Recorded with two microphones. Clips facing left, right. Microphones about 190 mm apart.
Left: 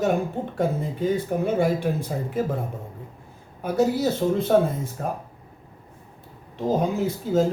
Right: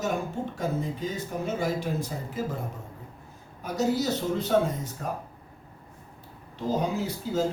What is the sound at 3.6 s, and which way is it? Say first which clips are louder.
Speech: left 5 dB; 55° left (ahead or behind).